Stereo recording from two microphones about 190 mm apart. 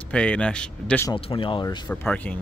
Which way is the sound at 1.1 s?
25° left (ahead or behind).